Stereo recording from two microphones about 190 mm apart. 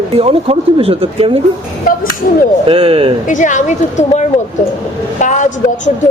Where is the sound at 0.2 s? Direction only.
30° right (ahead or behind).